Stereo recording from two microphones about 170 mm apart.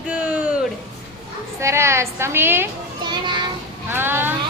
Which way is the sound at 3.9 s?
10° right (ahead or behind).